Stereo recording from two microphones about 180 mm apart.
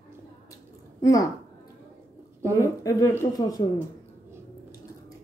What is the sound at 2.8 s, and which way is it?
Speech, 20° left (ahead or behind).